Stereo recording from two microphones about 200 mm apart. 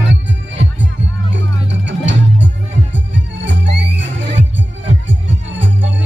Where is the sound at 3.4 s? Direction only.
60° right (ahead or behind).